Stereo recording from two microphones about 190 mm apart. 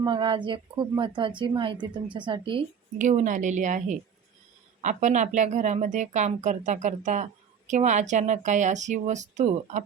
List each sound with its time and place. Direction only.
0.0 s speech: 25° right (ahead or behind)
3.0 s speech: 40° right (ahead or behind)